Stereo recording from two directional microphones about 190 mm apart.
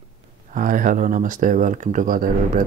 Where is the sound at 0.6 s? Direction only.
45° right (ahead or behind).